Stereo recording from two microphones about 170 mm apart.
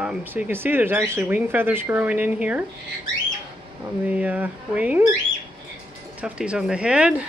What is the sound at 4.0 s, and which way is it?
Speech, 10° right (ahead or behind).